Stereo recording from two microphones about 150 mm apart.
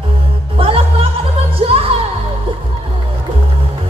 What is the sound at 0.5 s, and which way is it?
Music, 40° right (ahead or behind).